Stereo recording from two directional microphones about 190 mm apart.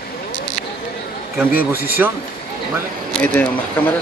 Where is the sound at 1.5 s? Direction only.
10° right (ahead or behind).